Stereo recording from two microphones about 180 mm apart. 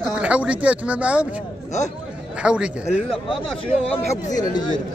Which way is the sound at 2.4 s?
5° right (ahead or behind).